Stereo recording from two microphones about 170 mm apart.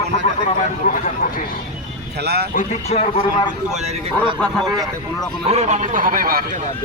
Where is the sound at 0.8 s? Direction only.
45° left (ahead or behind).